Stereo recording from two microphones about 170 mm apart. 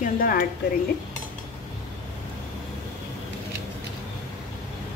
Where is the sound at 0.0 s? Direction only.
60° left (ahead or behind).